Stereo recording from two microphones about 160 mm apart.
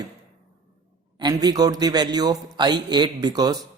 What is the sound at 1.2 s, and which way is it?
Speech, 25° right (ahead or behind).